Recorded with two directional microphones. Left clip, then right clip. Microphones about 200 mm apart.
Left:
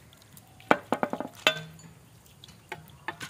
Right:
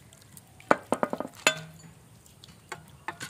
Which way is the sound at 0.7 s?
10° right (ahead or behind).